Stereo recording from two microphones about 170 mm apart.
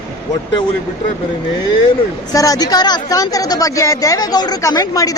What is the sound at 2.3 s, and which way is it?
Speech, 20° left (ahead or behind).